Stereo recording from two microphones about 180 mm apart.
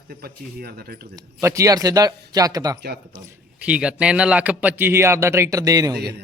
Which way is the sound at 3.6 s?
5° right (ahead or behind).